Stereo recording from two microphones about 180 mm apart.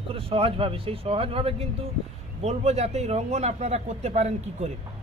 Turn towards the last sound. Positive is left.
turn(degrees=-35)  # may be behind; listen again after turning